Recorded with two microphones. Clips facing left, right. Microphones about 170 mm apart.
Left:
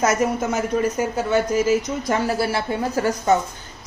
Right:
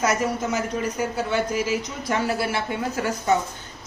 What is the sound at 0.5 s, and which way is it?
A woman's voice, 45° left (ahead or behind).